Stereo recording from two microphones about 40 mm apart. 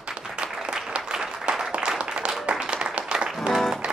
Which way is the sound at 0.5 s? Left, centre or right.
Centre.